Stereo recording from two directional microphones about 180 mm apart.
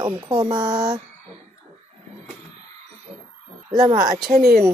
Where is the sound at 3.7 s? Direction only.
25° right (ahead or behind).